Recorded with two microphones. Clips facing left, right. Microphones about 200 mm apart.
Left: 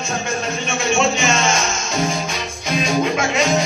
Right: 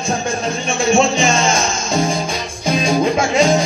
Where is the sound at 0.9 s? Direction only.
30° right (ahead or behind).